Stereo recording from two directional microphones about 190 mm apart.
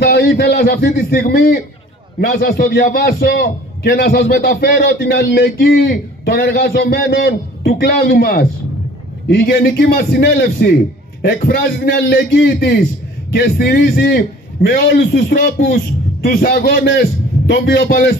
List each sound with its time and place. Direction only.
0.1 s a sound: 55° left (ahead or behind)
0.8 s a man's voice: 50° left (ahead or behind)
9.5 s a man's voice: 55° left (ahead or behind)